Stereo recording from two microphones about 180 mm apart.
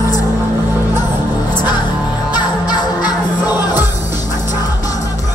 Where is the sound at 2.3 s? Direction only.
25° left (ahead or behind).